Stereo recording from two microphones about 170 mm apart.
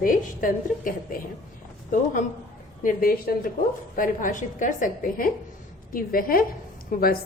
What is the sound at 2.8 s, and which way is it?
A woman's voice, 60° left (ahead or behind).